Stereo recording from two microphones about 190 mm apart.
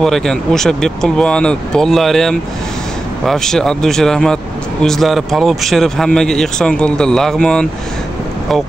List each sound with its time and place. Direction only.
0.0 s speech: centre (ahead or behind)